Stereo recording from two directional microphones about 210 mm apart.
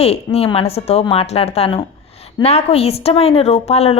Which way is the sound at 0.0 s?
30° left (ahead or behind).